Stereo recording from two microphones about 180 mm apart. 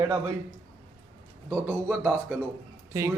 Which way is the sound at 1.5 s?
15° right (ahead or behind).